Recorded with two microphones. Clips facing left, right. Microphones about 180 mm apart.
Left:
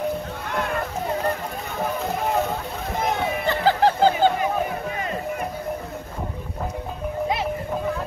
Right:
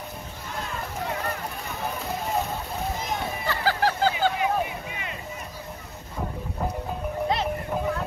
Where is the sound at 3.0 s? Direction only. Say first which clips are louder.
Left 6 dB; 65° left (ahead or behind).